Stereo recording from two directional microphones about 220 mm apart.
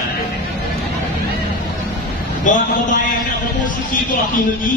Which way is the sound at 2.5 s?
35° left (ahead or behind).